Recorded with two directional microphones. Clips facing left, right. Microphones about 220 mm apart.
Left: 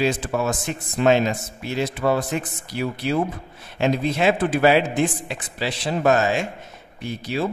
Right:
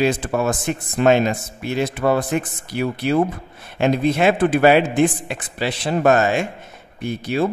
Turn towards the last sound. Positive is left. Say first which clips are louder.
# right 4 dB
turn(degrees=-55)  # may be behind; listen again after turning